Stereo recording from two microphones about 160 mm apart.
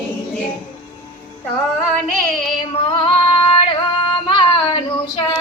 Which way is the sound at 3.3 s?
35° left (ahead or behind).